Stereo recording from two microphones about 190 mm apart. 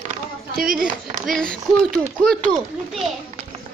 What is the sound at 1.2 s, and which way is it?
Speech, 5° left (ahead or behind).